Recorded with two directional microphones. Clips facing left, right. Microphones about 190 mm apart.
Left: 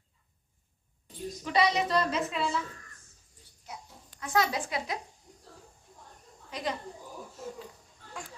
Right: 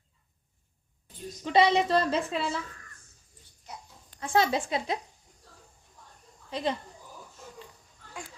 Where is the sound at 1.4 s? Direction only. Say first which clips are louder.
Right 4 dB; 25° right (ahead or behind).